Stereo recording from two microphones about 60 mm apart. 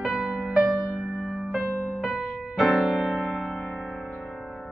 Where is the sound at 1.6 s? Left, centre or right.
Left.